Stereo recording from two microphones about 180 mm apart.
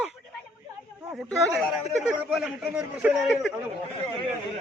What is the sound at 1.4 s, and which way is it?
A man's voice, 5° left (ahead or behind).